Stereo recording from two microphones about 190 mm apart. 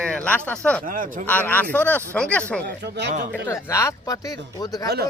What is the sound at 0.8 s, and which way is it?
Speech, 45° right (ahead or behind).